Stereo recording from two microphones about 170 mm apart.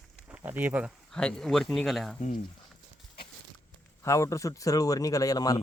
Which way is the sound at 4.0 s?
15° left (ahead or behind).